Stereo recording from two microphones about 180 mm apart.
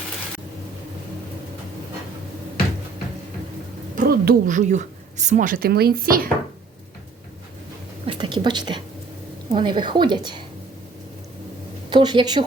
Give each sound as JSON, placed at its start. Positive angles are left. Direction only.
{"t": 3.9, "sound": "a woman's voice", "side_deg": -50}
{"t": 8.0, "sound": "a sound", "side_deg": -25}
{"t": 9.5, "sound": "a woman's voice", "side_deg": -25}
{"t": 11.9, "sound": "a woman's voice", "side_deg": -25}